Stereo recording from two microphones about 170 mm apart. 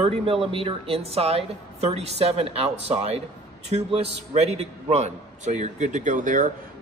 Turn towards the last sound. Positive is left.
turn(degrees=-50)  # may be behind; listen again after turning